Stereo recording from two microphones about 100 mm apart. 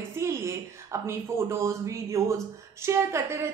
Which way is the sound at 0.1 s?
30° right (ahead or behind).